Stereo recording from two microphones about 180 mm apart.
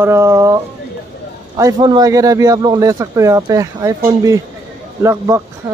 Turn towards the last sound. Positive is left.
turn(degrees=-15)  # may be behind; listen again after turning